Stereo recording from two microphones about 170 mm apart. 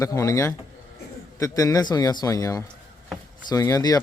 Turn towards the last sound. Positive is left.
turn(degrees=20)  # may be behind; listen again after turning